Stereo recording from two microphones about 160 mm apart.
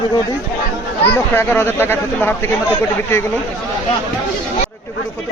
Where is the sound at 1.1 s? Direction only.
15° left (ahead or behind).